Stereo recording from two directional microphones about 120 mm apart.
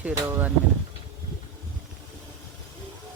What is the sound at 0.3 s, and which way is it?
Speech, 20° right (ahead or behind).